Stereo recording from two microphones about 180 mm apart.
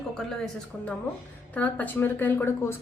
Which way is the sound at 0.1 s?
5° left (ahead or behind).